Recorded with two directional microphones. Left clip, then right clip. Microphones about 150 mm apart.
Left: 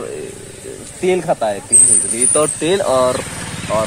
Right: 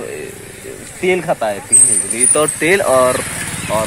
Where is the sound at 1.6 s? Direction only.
45° right (ahead or behind).